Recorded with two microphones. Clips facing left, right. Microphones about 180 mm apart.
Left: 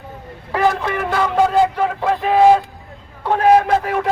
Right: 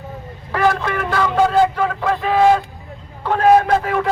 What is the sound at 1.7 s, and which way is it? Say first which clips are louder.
A man's voice: left 1 dB; 15° left (ahead or behind).